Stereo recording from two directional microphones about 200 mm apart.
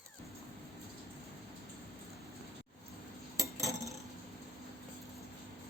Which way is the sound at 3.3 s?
15° right (ahead or behind).